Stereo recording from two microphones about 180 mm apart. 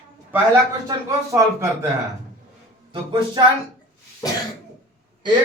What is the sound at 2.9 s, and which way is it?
Speech, 25° right (ahead or behind).